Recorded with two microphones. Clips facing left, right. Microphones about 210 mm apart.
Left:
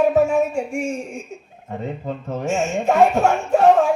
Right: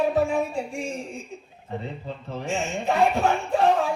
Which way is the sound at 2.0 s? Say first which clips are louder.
Left 7 dB; 45° left (ahead or behind).